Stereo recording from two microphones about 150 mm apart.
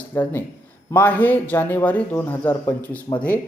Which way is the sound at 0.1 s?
10° left (ahead or behind).